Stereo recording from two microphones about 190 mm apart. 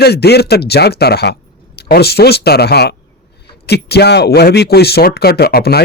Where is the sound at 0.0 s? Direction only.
60° left (ahead or behind).